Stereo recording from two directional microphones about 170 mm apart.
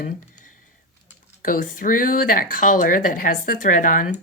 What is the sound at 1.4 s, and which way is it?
Speech, 55° left (ahead or behind).